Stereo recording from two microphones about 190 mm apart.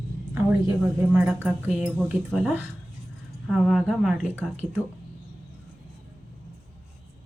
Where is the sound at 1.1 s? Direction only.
10° right (ahead or behind).